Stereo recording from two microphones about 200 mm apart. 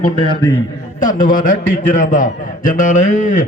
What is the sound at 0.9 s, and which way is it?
A man's voice, 40° left (ahead or behind).